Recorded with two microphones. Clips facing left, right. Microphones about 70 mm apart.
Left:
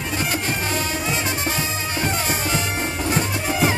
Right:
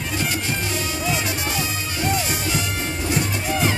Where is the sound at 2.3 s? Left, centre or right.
Left.